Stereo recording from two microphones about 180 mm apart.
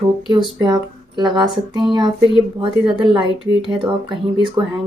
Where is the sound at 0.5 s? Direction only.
25° right (ahead or behind).